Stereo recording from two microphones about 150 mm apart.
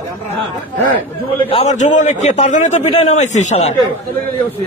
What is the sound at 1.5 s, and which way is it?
A man's voice, 50° left (ahead or behind).